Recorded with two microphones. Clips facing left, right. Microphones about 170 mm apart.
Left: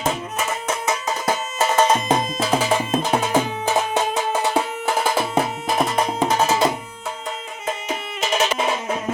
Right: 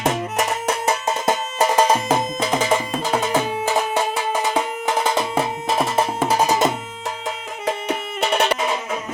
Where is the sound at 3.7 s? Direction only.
15° left (ahead or behind).